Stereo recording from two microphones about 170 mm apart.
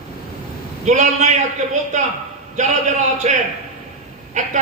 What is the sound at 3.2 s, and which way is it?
A man's voice, 45° right (ahead or behind).